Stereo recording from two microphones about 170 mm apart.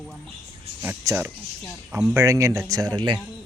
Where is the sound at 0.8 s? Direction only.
15° right (ahead or behind).